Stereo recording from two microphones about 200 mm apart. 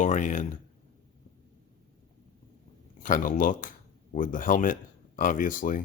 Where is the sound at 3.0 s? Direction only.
40° left (ahead or behind).